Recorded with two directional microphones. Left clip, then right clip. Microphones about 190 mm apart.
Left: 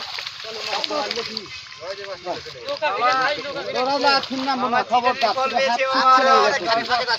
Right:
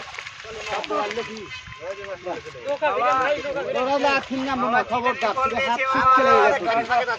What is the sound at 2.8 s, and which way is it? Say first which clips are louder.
Speech: left 1 dB; 50° right (ahead or behind).